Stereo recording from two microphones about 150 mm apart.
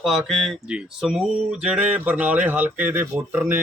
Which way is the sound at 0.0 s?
Centre (ahead or behind).